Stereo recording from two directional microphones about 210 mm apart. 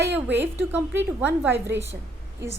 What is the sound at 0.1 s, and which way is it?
A woman's voice, 10° right (ahead or behind).